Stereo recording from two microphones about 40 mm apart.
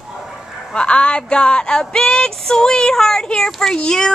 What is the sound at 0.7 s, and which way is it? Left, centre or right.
Female singing, left.